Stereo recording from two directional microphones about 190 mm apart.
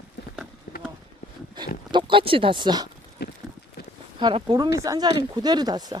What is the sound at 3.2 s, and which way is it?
Clip-clop, 60° left (ahead or behind).